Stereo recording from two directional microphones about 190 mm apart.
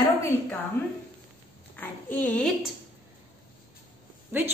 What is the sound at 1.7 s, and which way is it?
Speech, 10° left (ahead or behind).